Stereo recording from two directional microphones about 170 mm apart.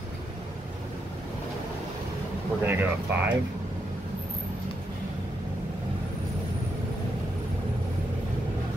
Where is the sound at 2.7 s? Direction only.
10° right (ahead or behind).